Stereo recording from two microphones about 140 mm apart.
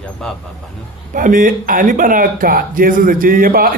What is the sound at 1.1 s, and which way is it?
Speech, 70° right (ahead or behind).